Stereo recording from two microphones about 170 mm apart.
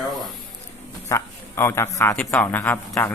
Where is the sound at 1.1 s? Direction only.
15° left (ahead or behind).